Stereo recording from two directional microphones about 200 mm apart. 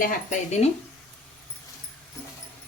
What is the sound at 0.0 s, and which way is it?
Speech, 35° left (ahead or behind).